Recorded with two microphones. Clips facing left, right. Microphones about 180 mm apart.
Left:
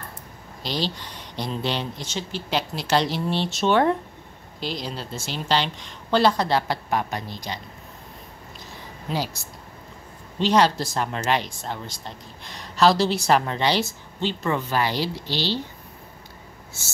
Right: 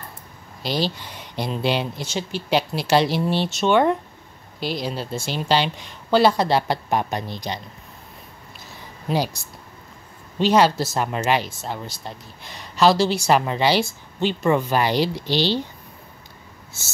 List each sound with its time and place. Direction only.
0.6 s speech: 5° right (ahead or behind)
9.1 s speech: 15° right (ahead or behind)
10.4 s speech: 5° right (ahead or behind)